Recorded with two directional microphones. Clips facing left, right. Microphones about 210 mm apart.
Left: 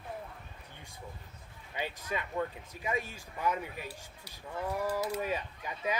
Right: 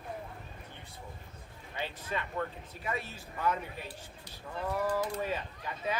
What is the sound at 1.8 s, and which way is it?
Speech, 15° left (ahead or behind).